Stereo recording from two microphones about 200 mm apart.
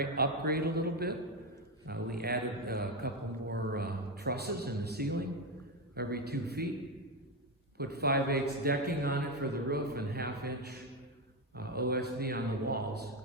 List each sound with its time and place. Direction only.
0.0 s a man's voice: 50° right (ahead or behind)
7.8 s a man's voice: 50° right (ahead or behind)